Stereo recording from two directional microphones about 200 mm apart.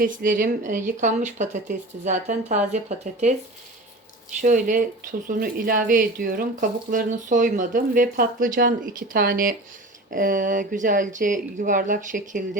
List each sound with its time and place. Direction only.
0.0 s speech: 45° right (ahead or behind)
4.4 s speech: 40° right (ahead or behind)